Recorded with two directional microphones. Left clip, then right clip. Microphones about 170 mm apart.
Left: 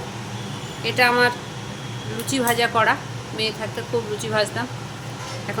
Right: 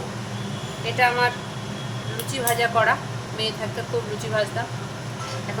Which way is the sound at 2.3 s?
40° left (ahead or behind).